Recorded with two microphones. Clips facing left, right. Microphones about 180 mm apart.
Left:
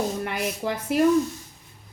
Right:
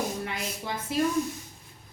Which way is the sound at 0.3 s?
65° left (ahead or behind).